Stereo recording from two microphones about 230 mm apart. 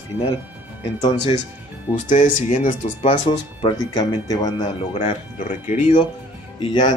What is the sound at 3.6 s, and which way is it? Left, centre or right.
Speech, centre.